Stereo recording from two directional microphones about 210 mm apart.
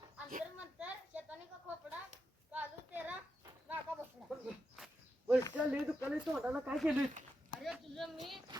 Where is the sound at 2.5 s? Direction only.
10° right (ahead or behind).